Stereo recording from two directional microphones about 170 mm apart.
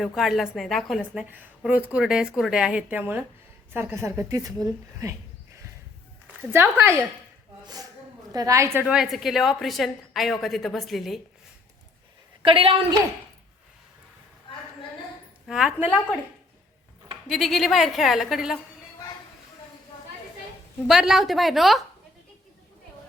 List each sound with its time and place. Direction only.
0.2 s a woman's voice: centre (ahead or behind); by 5.1 s 20° right (ahead or behind)
6.5 s a woman's voice: 15° right (ahead or behind)
12.4 s a woman's voice: 30° right (ahead or behind)
15.4 s a woman's voice: 5° right (ahead or behind)
17.2 s a woman's voice: centre (ahead or behind)
20.8 s a woman's voice: centre (ahead or behind)